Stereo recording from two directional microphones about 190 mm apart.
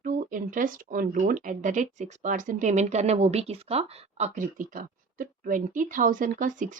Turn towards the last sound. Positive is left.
turn(degrees=-45)  # may be behind; listen again after turning